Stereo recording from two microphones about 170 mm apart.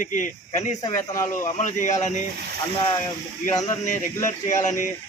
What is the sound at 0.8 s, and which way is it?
Speech, 25° left (ahead or behind).